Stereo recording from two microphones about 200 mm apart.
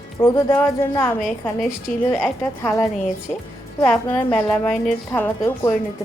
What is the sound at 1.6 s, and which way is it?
Speech, centre (ahead or behind).